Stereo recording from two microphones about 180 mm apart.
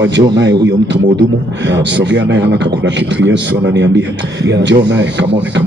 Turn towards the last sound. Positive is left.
turn(degrees=-75)  # may be behind; listen again after turning